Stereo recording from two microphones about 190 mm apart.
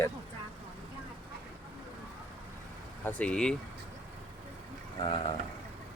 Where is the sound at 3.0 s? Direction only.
5° left (ahead or behind).